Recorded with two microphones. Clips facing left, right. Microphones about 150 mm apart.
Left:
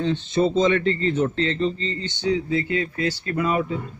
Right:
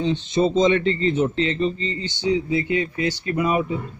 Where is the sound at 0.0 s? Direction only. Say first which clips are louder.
Right 1 dB; 15° right (ahead or behind).